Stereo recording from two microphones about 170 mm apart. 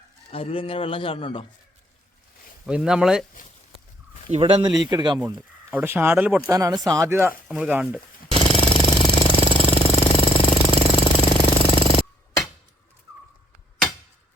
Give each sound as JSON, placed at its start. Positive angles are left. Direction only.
{"t": 0.3, "sound": "speech", "side_deg": 35}
{"t": 2.6, "sound": "speech", "side_deg": -5}
{"t": 4.3, "sound": "speech", "side_deg": -35}
{"t": 5.7, "sound": "speech", "side_deg": -15}
{"t": 8.4, "sound": "jackhammer", "side_deg": 30}